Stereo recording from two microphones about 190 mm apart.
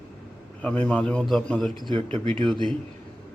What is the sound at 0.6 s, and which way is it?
A man's voice, 5° left (ahead or behind).